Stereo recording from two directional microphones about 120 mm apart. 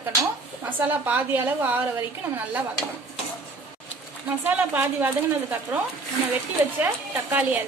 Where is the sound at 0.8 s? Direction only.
15° right (ahead or behind).